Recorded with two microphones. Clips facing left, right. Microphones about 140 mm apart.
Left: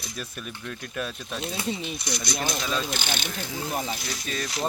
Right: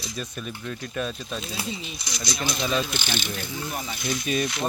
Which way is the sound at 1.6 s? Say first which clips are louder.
Left 4 dB; 55° left (ahead or behind).